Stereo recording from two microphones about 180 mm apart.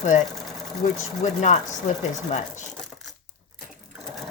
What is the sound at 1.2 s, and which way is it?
Speech, 40° left (ahead or behind).